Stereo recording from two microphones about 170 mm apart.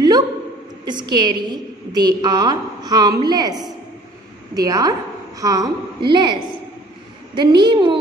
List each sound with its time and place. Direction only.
0.8 s a woman's voice: 25° right (ahead or behind)
4.6 s a woman's voice: 20° right (ahead or behind)
7.3 s a woman's voice: 25° right (ahead or behind)